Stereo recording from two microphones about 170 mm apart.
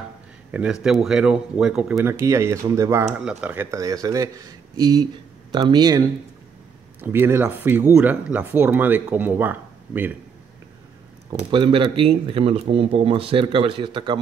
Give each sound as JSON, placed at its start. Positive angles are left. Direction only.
{"t": 0.5, "sound": "speech", "side_deg": -10}
{"t": 2.0, "sound": "speech", "side_deg": -15}
{"t": 11.5, "sound": "speech", "side_deg": -30}